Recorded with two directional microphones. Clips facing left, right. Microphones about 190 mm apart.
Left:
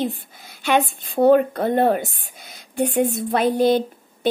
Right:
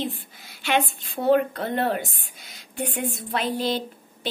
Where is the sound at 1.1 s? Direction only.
50° left (ahead or behind).